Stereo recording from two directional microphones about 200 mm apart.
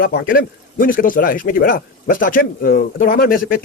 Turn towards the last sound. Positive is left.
turn(degrees=45)  # may be behind; listen again after turning